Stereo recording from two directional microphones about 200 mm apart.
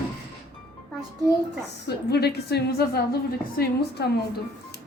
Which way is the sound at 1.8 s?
55° left (ahead or behind).